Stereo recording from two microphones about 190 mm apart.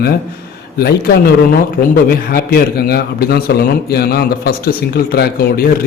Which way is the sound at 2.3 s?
55° left (ahead or behind).